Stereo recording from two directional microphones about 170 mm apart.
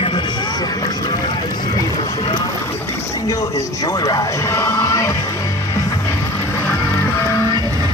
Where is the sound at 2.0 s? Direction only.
20° left (ahead or behind).